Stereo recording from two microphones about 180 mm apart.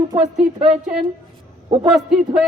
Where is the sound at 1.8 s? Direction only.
5° right (ahead or behind).